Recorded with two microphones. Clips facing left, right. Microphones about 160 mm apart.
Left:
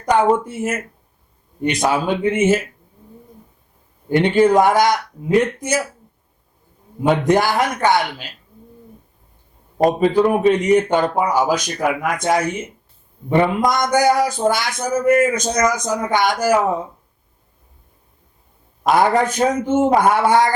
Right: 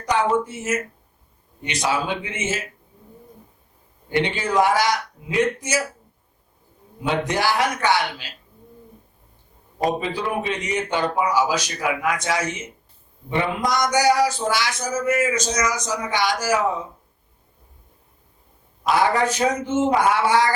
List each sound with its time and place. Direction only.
0.0 s speech: 50° left (ahead or behind)
4.2 s speech: 50° left (ahead or behind)
7.3 s speech: 50° left (ahead or behind)
9.7 s speech: 50° left (ahead or behind)
18.8 s a man's voice: 50° left (ahead or behind)